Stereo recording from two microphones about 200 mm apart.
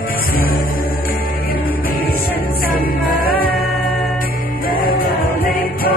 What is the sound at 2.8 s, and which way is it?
Music, 45° left (ahead or behind).